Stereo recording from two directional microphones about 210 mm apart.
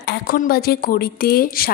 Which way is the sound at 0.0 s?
45° left (ahead or behind).